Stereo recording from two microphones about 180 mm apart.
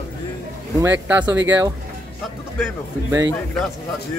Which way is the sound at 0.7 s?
10° right (ahead or behind).